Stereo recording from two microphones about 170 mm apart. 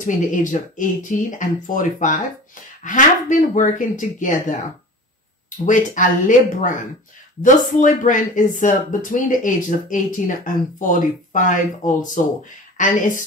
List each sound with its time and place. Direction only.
0.0 s speech: 50° left (ahead or behind)
5.7 s speech: 50° left (ahead or behind)